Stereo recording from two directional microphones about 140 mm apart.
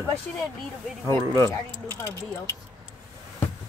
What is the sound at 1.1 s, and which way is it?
Speech, 25° right (ahead or behind).